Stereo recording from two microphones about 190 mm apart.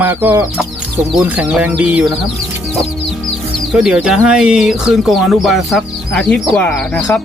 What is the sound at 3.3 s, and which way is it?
Speech, centre (ahead or behind).